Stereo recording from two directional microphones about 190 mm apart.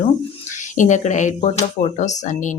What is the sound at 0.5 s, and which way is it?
Speech, 40° left (ahead or behind).